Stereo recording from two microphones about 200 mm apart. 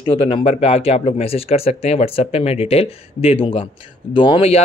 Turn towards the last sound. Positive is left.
turn(degrees=30)  # may be behind; listen again after turning